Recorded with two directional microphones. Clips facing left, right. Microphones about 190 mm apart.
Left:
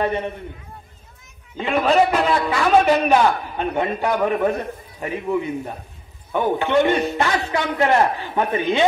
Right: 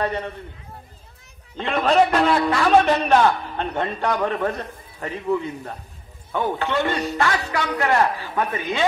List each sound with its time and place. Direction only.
0.0 s a man's voice: 20° left (ahead or behind)
1.6 s a man's voice: 5° left (ahead or behind); by 8.8 s 20° left (ahead or behind)